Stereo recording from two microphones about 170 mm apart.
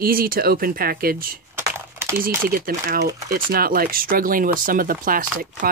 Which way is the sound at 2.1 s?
60° right (ahead or behind).